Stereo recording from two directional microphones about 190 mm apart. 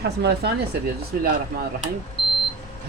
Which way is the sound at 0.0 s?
60° right (ahead or behind).